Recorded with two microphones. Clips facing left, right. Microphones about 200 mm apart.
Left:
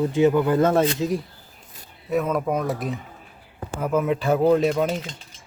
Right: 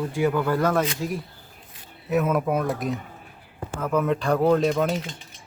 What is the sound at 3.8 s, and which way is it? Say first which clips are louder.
Speech: left 1 dB; 10° left (ahead or behind).